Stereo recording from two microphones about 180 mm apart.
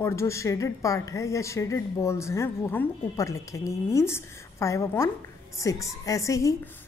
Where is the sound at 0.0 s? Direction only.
15° left (ahead or behind).